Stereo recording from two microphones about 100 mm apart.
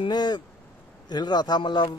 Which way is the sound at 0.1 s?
45° left (ahead or behind).